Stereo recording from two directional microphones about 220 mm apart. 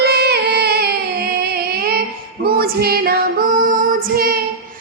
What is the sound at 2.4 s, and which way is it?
Female singing, 45° right (ahead or behind).